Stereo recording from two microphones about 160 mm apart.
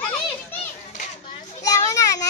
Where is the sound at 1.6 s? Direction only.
20° left (ahead or behind).